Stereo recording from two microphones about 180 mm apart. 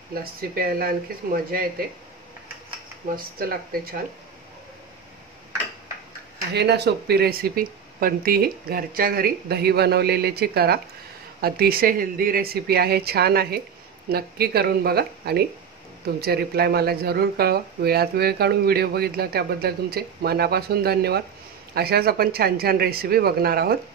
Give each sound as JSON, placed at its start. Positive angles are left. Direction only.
{"t": 0.1, "sound": "speech", "side_deg": -55}
{"t": 3.2, "sound": "speech", "side_deg": -55}
{"t": 6.5, "sound": "speech", "side_deg": -65}